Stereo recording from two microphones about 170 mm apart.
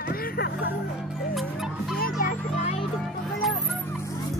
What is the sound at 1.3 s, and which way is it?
Music, centre (ahead or behind).